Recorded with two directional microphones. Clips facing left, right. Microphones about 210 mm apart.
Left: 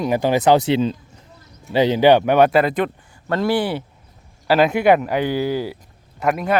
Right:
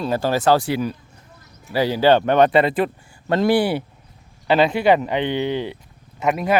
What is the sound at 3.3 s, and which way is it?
Speech, 20° right (ahead or behind).